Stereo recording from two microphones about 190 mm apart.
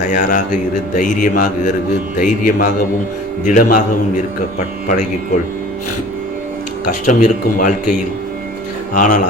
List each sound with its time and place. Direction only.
0.1 s a man's voice: 45° left (ahead or behind)
6.8 s a man's voice: 45° left (ahead or behind)